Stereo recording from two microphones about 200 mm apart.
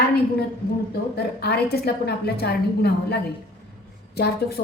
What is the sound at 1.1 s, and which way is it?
A woman's voice, 50° left (ahead or behind).